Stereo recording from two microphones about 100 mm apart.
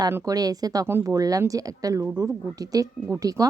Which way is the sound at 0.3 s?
40° right (ahead or behind).